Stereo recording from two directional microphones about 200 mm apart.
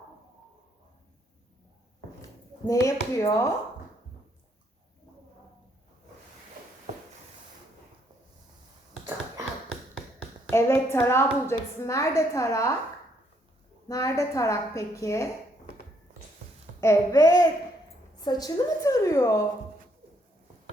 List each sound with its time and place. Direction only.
2.6 s a woman's voice: 15° left (ahead or behind)
10.5 s a woman's voice: 15° left (ahead or behind)
13.8 s a woman's voice: 15° left (ahead or behind)
16.8 s a woman's voice: 15° left (ahead or behind)